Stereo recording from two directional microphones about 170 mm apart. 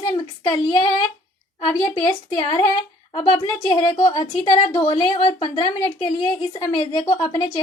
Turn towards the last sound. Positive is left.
turn(degrees=20)  # may be behind; listen again after turning